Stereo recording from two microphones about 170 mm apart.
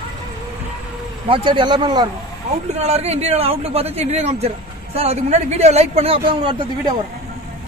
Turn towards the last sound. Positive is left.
turn(degrees=-30)  # may be behind; listen again after turning